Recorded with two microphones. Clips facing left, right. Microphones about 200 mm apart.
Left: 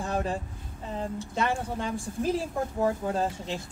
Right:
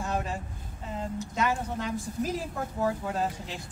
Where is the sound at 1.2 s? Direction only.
30° left (ahead or behind).